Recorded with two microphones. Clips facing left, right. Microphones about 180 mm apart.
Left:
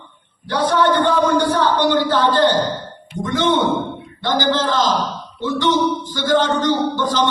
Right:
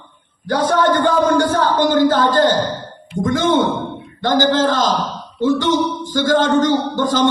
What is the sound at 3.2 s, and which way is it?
A man's voice, 45° right (ahead or behind).